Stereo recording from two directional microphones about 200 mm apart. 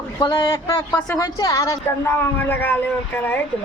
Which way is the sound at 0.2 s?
25° left (ahead or behind).